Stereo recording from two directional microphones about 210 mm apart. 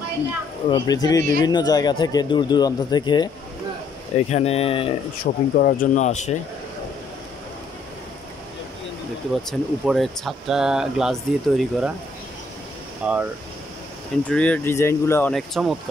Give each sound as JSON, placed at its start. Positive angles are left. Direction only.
{"t": 0.7, "sound": "speech", "side_deg": 20}
{"t": 4.3, "sound": "speech", "side_deg": 30}
{"t": 5.2, "sound": "speech", "side_deg": 40}
{"t": 9.5, "sound": "speech", "side_deg": 0}
{"t": 13.0, "sound": "speech", "side_deg": -5}
{"t": 14.3, "sound": "speech", "side_deg": 5}